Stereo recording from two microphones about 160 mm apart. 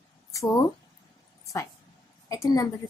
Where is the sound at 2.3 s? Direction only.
20° left (ahead or behind).